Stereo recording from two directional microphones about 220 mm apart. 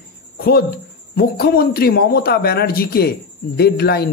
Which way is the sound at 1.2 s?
45° left (ahead or behind).